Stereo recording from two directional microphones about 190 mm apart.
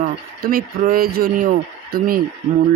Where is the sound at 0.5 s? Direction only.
50° right (ahead or behind).